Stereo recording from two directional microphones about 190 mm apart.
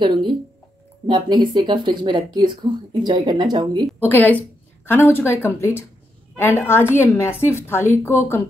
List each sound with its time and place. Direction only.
0.0 s a woman's voice: 25° right (ahead or behind)
4.0 s a woman's voice: 10° left (ahead or behind)